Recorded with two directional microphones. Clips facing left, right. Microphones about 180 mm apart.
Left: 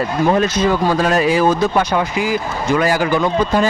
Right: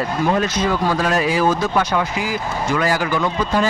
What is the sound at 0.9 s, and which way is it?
Speech, 25° left (ahead or behind).